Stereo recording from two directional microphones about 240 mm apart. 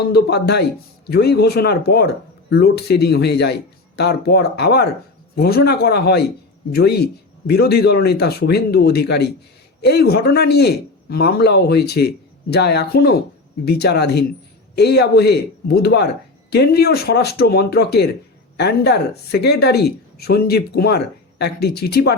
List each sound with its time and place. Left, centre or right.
0.0 s a man's voice: left